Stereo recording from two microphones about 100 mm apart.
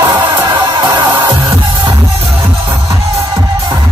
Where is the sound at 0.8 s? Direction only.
25° right (ahead or behind).